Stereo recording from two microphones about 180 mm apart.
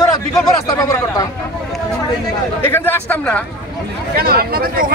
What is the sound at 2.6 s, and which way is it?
Speech, 15° left (ahead or behind).